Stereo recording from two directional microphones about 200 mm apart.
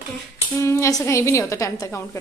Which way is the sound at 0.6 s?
15° left (ahead or behind).